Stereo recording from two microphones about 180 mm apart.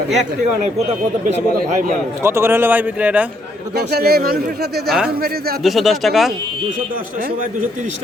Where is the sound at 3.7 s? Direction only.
60° right (ahead or behind).